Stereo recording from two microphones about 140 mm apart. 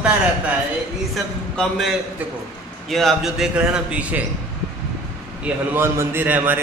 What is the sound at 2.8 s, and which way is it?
A man's voice, centre (ahead or behind).